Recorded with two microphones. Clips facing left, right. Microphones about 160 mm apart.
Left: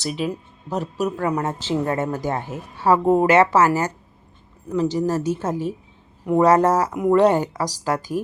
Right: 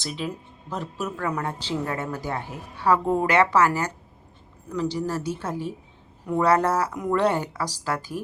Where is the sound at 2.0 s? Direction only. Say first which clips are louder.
Left 6 dB; 45° left (ahead or behind).